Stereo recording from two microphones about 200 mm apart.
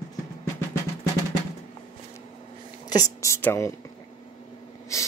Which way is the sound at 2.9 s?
15° left (ahead or behind).